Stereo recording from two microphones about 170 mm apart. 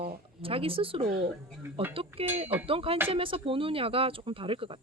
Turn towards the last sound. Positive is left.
turn(degrees=-30)  # may be behind; listen again after turning